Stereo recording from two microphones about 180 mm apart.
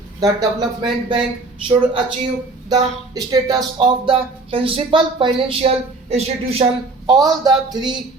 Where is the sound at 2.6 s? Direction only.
20° right (ahead or behind).